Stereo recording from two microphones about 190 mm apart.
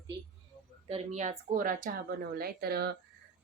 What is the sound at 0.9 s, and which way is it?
Speech, 35° right (ahead or behind).